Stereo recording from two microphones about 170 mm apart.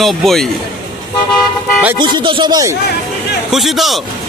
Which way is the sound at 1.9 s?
25° right (ahead or behind).